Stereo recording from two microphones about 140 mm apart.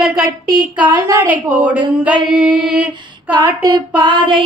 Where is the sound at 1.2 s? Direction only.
10° right (ahead or behind).